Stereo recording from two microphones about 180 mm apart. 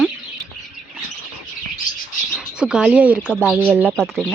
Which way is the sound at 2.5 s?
5° right (ahead or behind).